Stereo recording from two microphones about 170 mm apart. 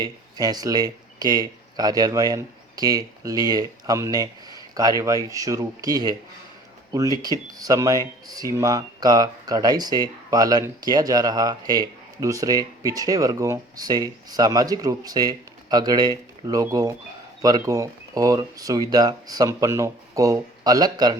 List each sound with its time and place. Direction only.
0.0 s speech: 20° right (ahead or behind)